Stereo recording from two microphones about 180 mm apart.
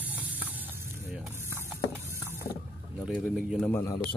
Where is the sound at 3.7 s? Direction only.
15° left (ahead or behind).